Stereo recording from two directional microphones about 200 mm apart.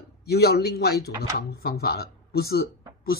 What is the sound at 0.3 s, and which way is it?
Speech, 55° left (ahead or behind).